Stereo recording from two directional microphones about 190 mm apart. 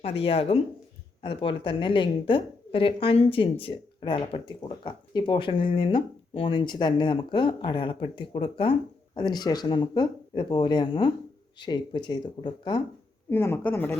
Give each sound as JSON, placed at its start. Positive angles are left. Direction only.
{"t": 0.0, "sound": "a woman's voice", "side_deg": 30}
{"t": 13.3, "sound": "speech", "side_deg": 10}